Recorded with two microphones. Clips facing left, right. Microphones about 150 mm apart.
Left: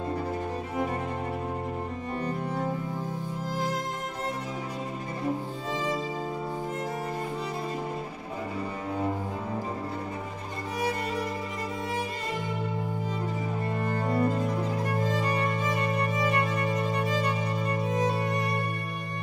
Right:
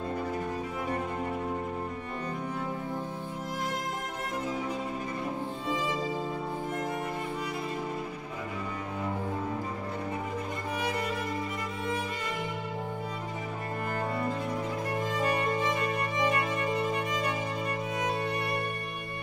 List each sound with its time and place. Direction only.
13.7 s cello: 30° left (ahead or behind)
15.0 s music: 35° left (ahead or behind)
16.9 s music: 35° left (ahead or behind)